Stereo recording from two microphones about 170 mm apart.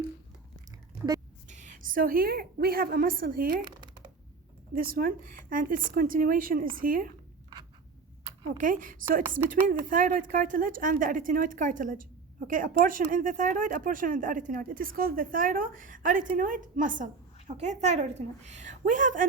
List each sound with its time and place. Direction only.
1.5 s a woman's voice: 45° right (ahead or behind)
4.7 s a woman's voice: 60° right (ahead or behind)
8.5 s speech: 50° right (ahead or behind)